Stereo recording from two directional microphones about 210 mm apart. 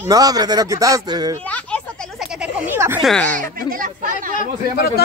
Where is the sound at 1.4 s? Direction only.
5° left (ahead or behind); by 3.0 s 10° right (ahead or behind).